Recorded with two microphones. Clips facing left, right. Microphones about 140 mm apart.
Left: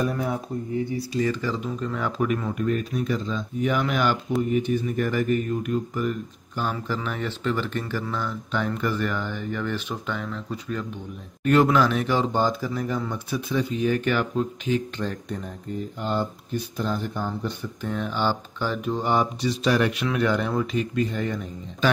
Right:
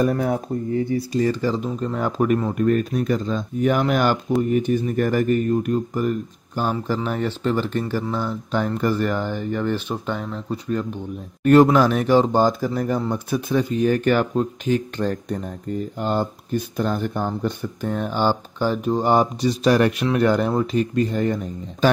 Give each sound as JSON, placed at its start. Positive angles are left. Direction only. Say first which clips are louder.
{"t": 0.0, "sound": "speech", "louder": "right 6 dB", "side_deg": -50}
{"t": 1.1, "sound": "speech", "louder": "right 4 dB", "side_deg": -35}